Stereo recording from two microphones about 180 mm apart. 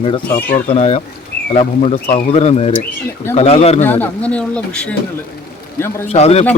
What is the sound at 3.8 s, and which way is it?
Speech, 10° left (ahead or behind).